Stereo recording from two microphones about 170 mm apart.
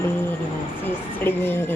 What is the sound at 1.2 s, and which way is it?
Speech, 15° left (ahead or behind).